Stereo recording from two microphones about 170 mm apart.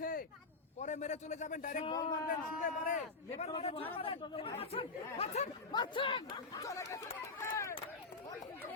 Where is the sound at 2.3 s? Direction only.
50° left (ahead or behind).